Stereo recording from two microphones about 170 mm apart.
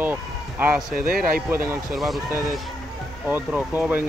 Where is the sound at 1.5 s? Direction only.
15° right (ahead or behind).